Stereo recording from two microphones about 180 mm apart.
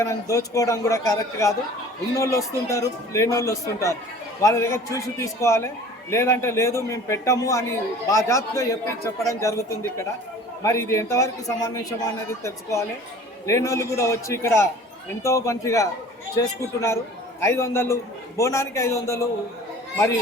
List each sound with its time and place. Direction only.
0.0 s a man's voice: 15° left (ahead or behind)